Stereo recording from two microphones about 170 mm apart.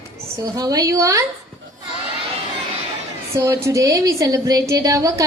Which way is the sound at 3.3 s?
20° right (ahead or behind).